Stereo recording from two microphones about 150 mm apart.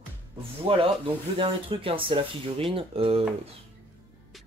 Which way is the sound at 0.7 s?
35° right (ahead or behind).